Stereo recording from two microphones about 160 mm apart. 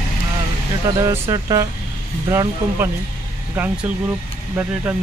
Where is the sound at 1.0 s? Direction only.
20° right (ahead or behind).